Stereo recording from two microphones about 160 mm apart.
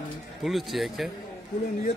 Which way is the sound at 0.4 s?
Centre (ahead or behind).